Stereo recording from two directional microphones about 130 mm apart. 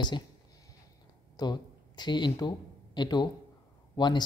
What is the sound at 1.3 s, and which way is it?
Speech, 35° left (ahead or behind).